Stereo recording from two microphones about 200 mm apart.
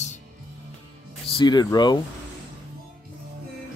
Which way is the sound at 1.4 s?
20° left (ahead or behind).